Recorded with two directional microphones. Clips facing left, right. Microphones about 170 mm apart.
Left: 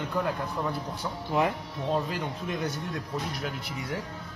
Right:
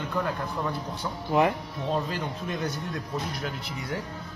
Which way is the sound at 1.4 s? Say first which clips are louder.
Right 3 dB; 70° right (ahead or behind).